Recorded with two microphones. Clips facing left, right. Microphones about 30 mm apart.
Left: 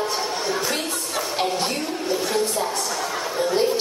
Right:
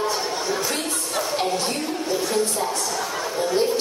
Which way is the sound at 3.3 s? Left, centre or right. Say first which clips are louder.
Even; centre.